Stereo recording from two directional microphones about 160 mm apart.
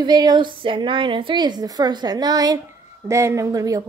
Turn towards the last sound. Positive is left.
turn(degrees=-20)  # may be behind; listen again after turning